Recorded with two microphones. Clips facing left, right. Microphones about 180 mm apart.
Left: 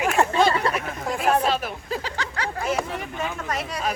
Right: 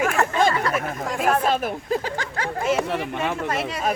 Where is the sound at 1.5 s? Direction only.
50° right (ahead or behind).